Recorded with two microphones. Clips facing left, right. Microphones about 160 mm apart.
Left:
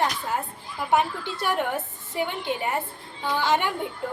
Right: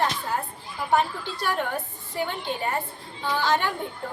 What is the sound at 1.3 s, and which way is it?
Speech, 20° left (ahead or behind).